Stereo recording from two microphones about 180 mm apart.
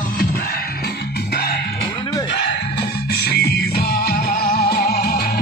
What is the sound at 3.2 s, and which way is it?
Music, 60° left (ahead or behind).